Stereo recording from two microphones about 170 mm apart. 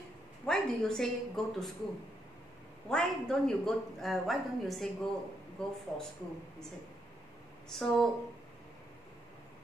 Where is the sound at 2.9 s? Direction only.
5° left (ahead or behind).